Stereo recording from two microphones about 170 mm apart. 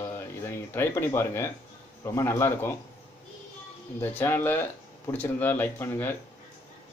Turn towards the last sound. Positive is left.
turn(degrees=10)  # may be behind; listen again after turning